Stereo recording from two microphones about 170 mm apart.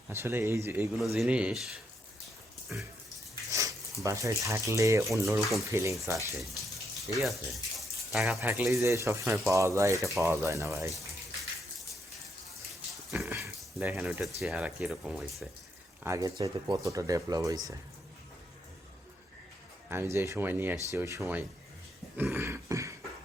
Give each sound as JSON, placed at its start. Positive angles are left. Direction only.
{"t": 0.1, "sound": "speech", "side_deg": -15}
{"t": 1.1, "sound": "speech", "side_deg": -5}
{"t": 2.2, "sound": "a sound", "side_deg": 0}
{"t": 3.5, "sound": "speech", "side_deg": -20}
{"t": 7.1, "sound": "speech", "side_deg": 0}
{"t": 8.4, "sound": "speech", "side_deg": -15}
{"t": 13.1, "sound": "a sound", "side_deg": -10}
{"t": 13.7, "sound": "speech", "side_deg": -5}
{"t": 16.0, "sound": "speech", "side_deg": -20}
{"t": 19.9, "sound": "speech", "side_deg": -15}
{"t": 22.2, "sound": "dog", "side_deg": -15}